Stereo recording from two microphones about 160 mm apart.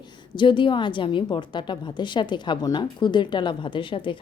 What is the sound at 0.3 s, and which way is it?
A woman's voice, 30° left (ahead or behind).